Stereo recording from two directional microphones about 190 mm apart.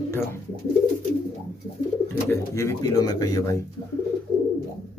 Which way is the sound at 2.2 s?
15° left (ahead or behind).